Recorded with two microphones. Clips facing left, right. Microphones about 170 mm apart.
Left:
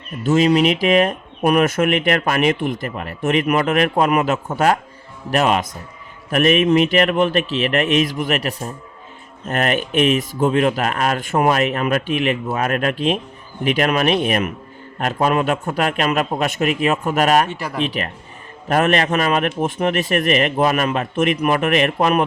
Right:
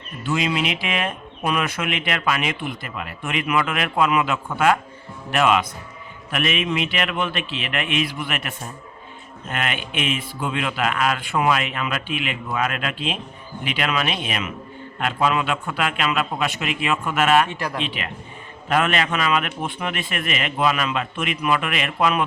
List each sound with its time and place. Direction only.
0.3 s a man's voice: 40° left (ahead or behind)
17.5 s speech: centre (ahead or behind)
17.8 s a man's voice: 40° left (ahead or behind)